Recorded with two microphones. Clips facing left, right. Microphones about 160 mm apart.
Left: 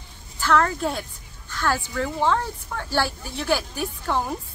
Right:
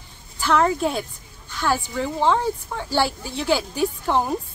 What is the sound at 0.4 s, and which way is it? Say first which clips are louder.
A woman's voice: right 2 dB; 15° right (ahead or behind).